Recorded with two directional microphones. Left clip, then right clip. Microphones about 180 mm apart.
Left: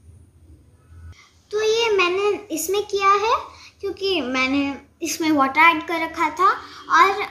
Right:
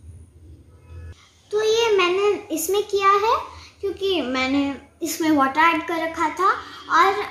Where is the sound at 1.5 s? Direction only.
Centre (ahead or behind).